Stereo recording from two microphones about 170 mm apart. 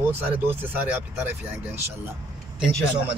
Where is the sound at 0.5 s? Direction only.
10° right (ahead or behind).